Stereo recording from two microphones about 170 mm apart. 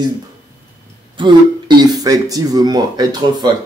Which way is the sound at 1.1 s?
30° right (ahead or behind).